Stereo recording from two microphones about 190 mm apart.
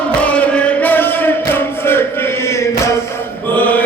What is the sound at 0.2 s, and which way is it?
Music, 5° left (ahead or behind).